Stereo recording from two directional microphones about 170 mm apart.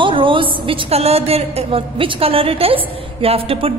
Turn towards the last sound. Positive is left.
turn(degrees=-35)  # may be behind; listen again after turning